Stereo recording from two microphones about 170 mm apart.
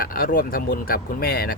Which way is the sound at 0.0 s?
60° left (ahead or behind).